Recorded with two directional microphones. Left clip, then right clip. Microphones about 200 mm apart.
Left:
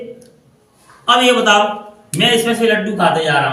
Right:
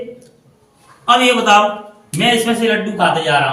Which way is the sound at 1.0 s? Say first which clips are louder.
Even; 20° left (ahead or behind).